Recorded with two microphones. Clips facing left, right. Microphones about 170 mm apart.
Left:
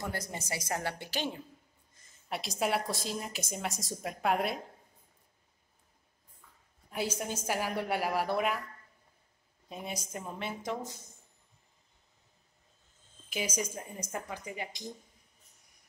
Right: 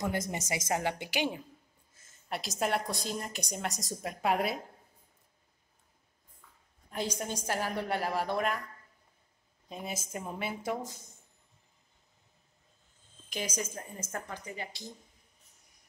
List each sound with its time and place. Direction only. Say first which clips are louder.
0.3 s a woman's voice: right 4 dB; 20° right (ahead or behind)
2.0 s a woman's voice: even; centre (ahead or behind)
6.9 s a woman's voice: even; 5° left (ahead or behind)
9.7 s a woman's voice: right 1 dB; centre (ahead or behind)
13.3 s a woman's voice: left 1 dB; 10° left (ahead or behind)